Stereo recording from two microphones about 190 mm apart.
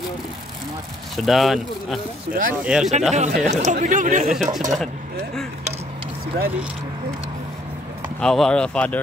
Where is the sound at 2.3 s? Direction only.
50° right (ahead or behind).